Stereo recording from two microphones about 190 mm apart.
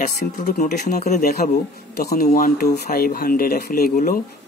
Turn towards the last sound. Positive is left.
turn(degrees=50)  # may be behind; listen again after turning